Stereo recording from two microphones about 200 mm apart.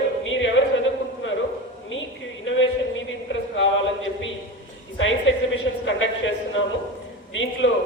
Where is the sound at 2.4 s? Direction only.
70° left (ahead or behind).